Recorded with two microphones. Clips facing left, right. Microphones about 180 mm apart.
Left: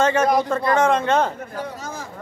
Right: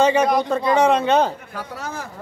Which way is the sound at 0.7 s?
15° right (ahead or behind).